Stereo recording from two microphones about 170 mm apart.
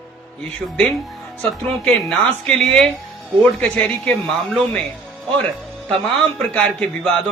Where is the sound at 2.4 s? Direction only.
5° left (ahead or behind).